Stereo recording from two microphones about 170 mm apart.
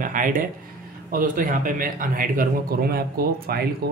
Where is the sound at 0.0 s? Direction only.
50° right (ahead or behind).